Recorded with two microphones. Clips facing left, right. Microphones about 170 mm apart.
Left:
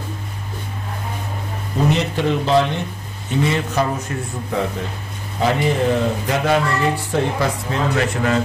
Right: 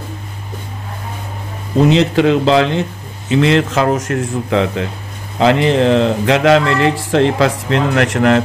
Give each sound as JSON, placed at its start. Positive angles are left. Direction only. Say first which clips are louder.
{"t": 1.9, "sound": "speech", "louder": "right 7 dB", "side_deg": -90}